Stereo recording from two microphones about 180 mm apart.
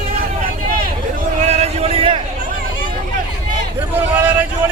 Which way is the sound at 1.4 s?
35° right (ahead or behind).